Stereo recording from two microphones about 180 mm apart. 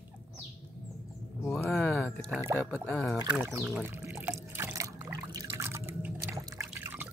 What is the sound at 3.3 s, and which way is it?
Speech, 15° right (ahead or behind).